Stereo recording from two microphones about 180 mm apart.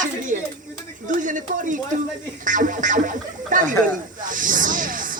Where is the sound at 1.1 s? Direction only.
45° right (ahead or behind).